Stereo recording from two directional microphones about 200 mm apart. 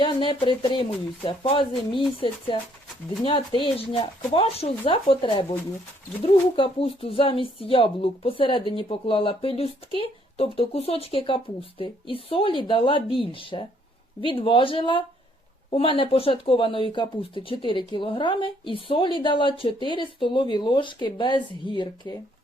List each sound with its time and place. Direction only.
0.0 s speech: 25° left (ahead or behind)
6.6 s speech: 30° left (ahead or behind)